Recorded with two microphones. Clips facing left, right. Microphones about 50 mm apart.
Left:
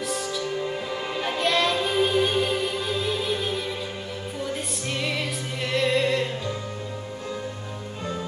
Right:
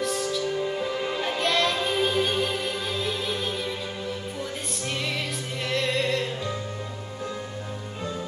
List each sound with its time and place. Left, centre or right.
0.0 s music: centre
5.0 s music: centre